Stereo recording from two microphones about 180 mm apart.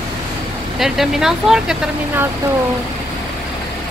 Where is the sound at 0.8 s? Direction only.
Centre (ahead or behind).